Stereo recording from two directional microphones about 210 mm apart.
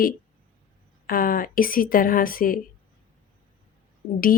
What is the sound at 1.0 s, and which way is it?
A woman's voice, 45° left (ahead or behind).